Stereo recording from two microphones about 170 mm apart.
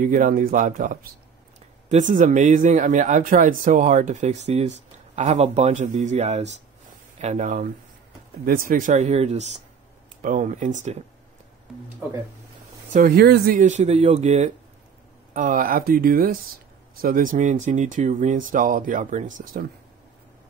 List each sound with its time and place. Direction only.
0.0 s speech: 50° right (ahead or behind)
12.9 s speech: 60° right (ahead or behind); by 14.5 s 40° right (ahead or behind)
15.3 s speech: 55° right (ahead or behind)